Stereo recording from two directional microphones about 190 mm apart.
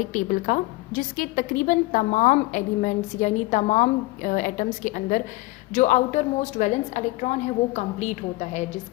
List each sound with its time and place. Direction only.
0.1 s a woman's voice: 45° left (ahead or behind)